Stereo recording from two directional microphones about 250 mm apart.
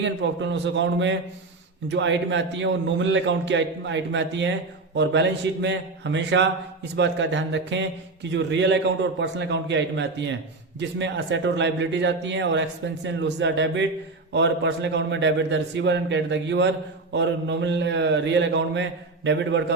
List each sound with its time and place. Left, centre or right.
0.0 s a man's voice: right